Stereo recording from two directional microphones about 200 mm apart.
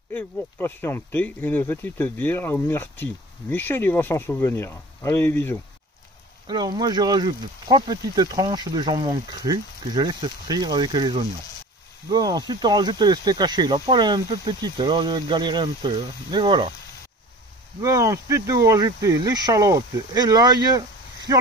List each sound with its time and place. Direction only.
0.1 s speech: 10° left (ahead or behind)
6.4 s speech: 20° right (ahead or behind)
17.7 s speech: 15° right (ahead or behind)